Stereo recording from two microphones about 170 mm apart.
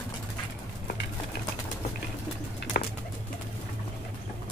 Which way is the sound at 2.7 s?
65° left (ahead or behind).